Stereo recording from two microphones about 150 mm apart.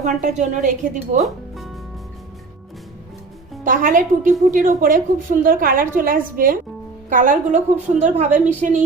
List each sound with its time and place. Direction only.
0.0 s a woman's voice: 55° right (ahead or behind)
1.2 s music: centre (ahead or behind)
3.6 s a woman's voice: 60° right (ahead or behind)